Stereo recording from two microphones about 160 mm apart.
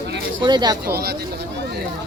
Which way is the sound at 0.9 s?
75° right (ahead or behind).